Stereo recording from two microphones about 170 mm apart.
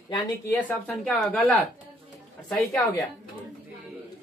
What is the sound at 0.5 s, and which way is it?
Speech, 10° left (ahead or behind).